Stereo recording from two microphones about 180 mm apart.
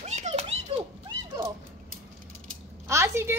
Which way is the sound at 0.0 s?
40° right (ahead or behind).